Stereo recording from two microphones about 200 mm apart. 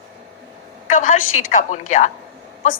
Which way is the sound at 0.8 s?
40° left (ahead or behind).